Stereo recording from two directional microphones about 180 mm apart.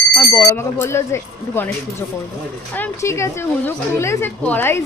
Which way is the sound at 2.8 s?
15° left (ahead or behind).